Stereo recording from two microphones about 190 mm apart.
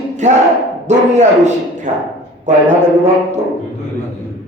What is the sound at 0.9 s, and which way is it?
A man's voice, 40° right (ahead or behind).